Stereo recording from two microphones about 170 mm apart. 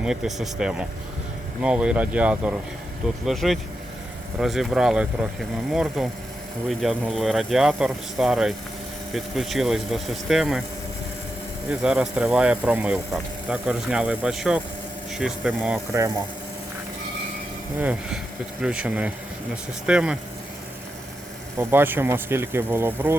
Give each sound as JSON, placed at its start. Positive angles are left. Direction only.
{"t": 0.0, "sound": "speech", "side_deg": -5}
{"t": 11.7, "sound": "speech", "side_deg": -5}
{"t": 15.9, "sound": "speech", "side_deg": -15}
{"t": 17.7, "sound": "speech", "side_deg": -10}
{"t": 21.6, "sound": "speech", "side_deg": -10}